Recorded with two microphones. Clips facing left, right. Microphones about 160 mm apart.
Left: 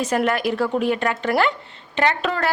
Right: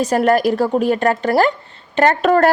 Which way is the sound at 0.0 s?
40° right (ahead or behind).